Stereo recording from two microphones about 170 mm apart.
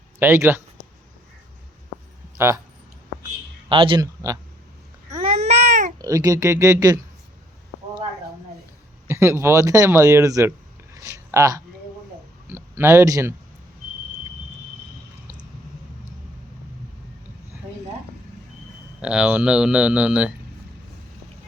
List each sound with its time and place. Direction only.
0.2 s speech: 15° right (ahead or behind)
3.7 s speech: 30° right (ahead or behind)
5.1 s babbling: 35° right (ahead or behind)
6.0 s speech: 20° right (ahead or behind)
9.0 s speech: 15° right (ahead or behind)
10.9 s a sound: 20° right (ahead or behind)
12.5 s speech: 15° right (ahead or behind)
19.0 s speech: 5° right (ahead or behind)